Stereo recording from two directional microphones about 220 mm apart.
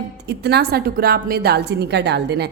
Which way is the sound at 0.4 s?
45° right (ahead or behind).